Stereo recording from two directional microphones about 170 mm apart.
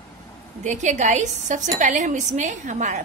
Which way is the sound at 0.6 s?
45° right (ahead or behind).